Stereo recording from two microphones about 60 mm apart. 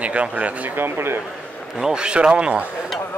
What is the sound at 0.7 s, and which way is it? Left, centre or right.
Speech, right.